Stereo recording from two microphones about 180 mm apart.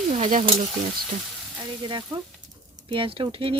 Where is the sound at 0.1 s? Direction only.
45° right (ahead or behind).